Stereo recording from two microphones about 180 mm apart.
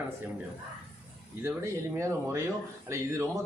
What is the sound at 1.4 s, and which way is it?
Speech, 15° right (ahead or behind).